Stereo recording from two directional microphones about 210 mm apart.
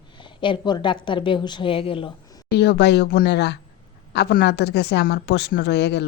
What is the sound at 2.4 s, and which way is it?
A woman's voice, 50° left (ahead or behind).